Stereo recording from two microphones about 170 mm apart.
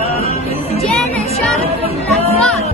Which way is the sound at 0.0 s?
35° right (ahead or behind).